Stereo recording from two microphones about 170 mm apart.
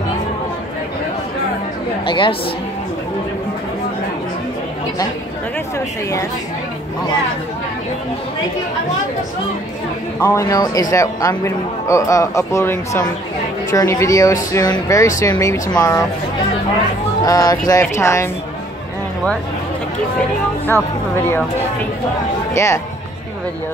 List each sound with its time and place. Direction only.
2.0 s music: 30° left (ahead or behind)
10.2 s speech: 20° left (ahead or behind)
17.2 s speech: 25° left (ahead or behind)
22.5 s speech: 15° left (ahead or behind)